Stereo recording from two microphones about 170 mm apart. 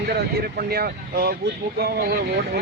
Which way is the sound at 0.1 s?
70° right (ahead or behind).